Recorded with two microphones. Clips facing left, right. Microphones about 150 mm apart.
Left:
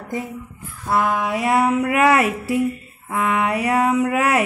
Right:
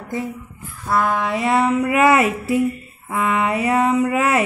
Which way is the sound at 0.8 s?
15° left (ahead or behind).